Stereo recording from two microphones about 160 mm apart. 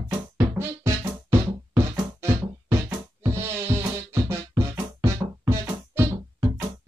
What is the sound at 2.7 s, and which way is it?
Music, 15° right (ahead or behind).